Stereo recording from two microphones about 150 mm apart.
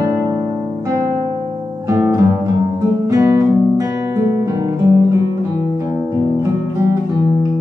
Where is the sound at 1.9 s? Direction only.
20° right (ahead or behind).